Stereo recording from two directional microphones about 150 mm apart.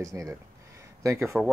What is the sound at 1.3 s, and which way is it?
Speech, 5° right (ahead or behind).